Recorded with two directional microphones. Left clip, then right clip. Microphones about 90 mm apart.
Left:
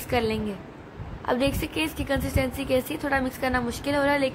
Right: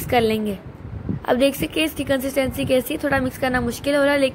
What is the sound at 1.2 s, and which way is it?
A woman's voice, 40° right (ahead or behind).